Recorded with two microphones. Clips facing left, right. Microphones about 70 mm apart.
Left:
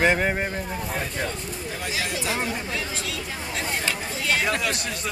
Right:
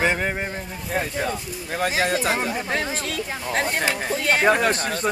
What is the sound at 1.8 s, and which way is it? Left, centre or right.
Speech, right.